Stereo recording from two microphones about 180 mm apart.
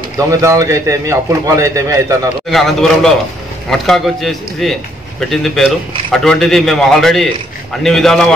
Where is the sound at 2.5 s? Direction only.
Centre (ahead or behind).